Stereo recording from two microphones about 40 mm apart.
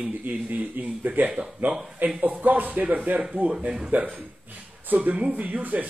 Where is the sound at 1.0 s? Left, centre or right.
Right.